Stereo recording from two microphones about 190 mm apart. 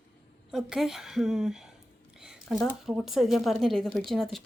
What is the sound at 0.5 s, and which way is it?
Speech, centre (ahead or behind).